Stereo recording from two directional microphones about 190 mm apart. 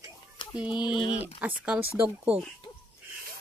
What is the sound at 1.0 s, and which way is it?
Speech, 30° left (ahead or behind).